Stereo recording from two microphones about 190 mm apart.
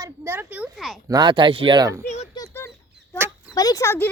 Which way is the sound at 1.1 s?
25° right (ahead or behind).